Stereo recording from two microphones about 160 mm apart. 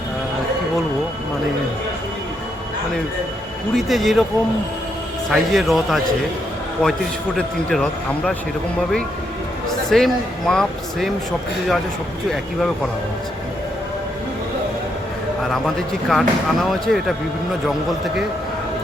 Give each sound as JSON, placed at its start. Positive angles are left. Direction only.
{"t": 3.8, "sound": "speech", "side_deg": 0}
{"t": 5.3, "sound": "speech", "side_deg": 0}
{"t": 9.9, "sound": "speech", "side_deg": 0}
{"t": 15.5, "sound": "speech", "side_deg": 0}